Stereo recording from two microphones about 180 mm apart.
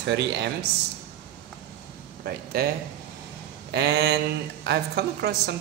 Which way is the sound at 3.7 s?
65° right (ahead or behind).